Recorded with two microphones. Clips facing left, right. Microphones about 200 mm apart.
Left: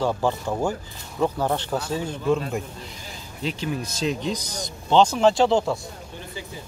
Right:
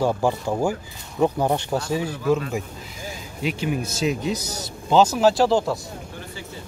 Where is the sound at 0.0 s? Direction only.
10° right (ahead or behind).